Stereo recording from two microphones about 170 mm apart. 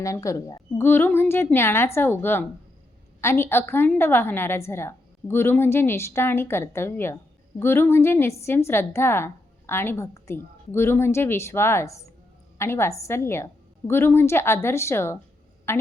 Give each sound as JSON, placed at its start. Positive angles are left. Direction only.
{"t": 0.0, "sound": "a woman's voice", "side_deg": 20}